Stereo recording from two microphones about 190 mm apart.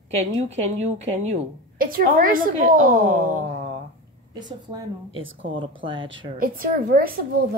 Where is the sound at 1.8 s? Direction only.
50° right (ahead or behind).